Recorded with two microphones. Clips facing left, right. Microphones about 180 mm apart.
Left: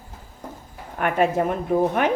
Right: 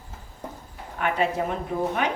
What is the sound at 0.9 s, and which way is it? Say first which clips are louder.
A woman's voice: left 4 dB; 50° left (ahead or behind).